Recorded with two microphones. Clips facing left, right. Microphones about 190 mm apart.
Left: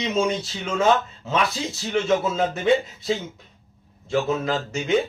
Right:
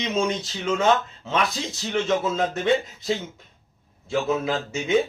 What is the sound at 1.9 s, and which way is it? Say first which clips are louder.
Speech: left 1 dB; 5° left (ahead or behind).